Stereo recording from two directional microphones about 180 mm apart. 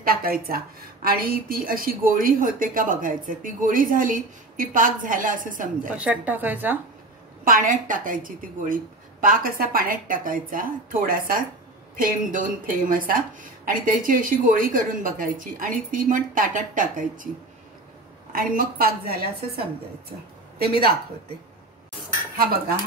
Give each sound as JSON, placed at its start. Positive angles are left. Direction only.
{"t": 0.0, "sound": "a woman's voice", "side_deg": -55}
{"t": 5.9, "sound": "a woman's voice", "side_deg": -5}
{"t": 7.4, "sound": "a woman's voice", "side_deg": -50}
{"t": 18.3, "sound": "a woman's voice", "side_deg": -55}